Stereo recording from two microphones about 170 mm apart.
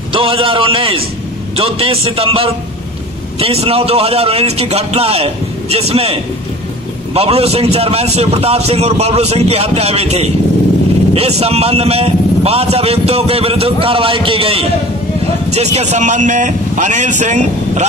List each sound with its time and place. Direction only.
0.1 s a man's voice: 30° right (ahead or behind)
7.2 s a man's voice: 35° right (ahead or behind)